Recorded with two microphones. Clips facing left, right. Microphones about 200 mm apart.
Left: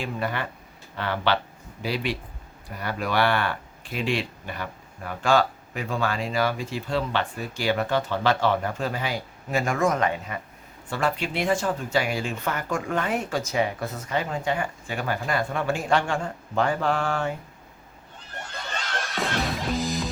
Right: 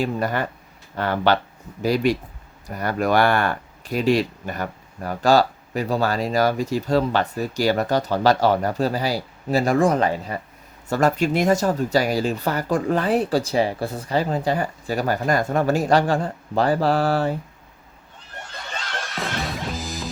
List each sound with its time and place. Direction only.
0.0 s speech: 40° right (ahead or behind)
19.0 s music: centre (ahead or behind)